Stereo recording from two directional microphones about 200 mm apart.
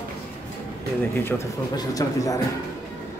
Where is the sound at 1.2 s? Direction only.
15° left (ahead or behind).